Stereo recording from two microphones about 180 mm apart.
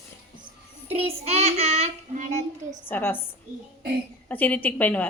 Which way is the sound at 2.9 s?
10° left (ahead or behind).